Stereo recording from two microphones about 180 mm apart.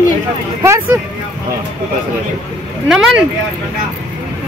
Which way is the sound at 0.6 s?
15° right (ahead or behind).